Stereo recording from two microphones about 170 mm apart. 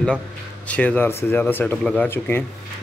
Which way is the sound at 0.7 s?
10° left (ahead or behind).